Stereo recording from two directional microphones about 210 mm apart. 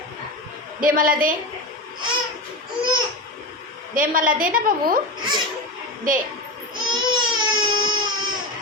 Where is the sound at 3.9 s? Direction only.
40° right (ahead or behind).